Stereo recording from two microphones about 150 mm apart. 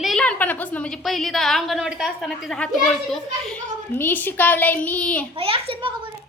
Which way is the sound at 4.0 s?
15° left (ahead or behind).